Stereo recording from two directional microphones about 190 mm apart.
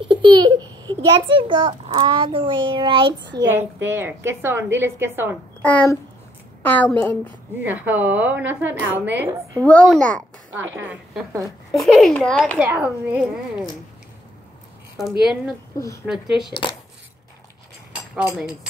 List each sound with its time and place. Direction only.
0.0 s a child's voice: 25° right (ahead or behind)
3.3 s a woman's voice: 15° right (ahead or behind)
5.6 s a woman's voice: 10° left (ahead or behind)
7.6 s a woman's voice: 10° right (ahead or behind)
9.7 s speech: 5° left (ahead or behind)
10.5 s a woman's voice: 10° right (ahead or behind)
11.8 s speech: 5° left (ahead or behind)
12.5 s a woman's voice: 5° right (ahead or behind)
16.1 s speech: 5° right (ahead or behind)
16.4 s speech: 25° left (ahead or behind)
18.1 s speech: 5° right (ahead or behind)